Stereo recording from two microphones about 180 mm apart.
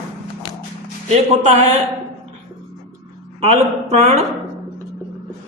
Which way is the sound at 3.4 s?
35° right (ahead or behind).